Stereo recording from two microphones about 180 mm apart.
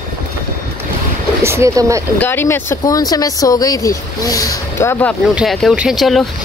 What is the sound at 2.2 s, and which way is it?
Speech, 10° left (ahead or behind).